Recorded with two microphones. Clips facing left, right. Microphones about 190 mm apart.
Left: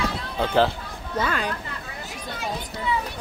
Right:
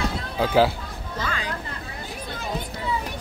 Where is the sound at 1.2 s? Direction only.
60° left (ahead or behind).